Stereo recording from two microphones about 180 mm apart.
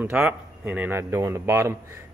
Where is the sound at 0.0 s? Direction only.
10° right (ahead or behind).